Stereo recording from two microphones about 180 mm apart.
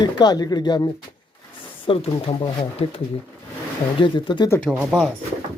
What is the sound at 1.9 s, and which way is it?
Speech, 30° left (ahead or behind).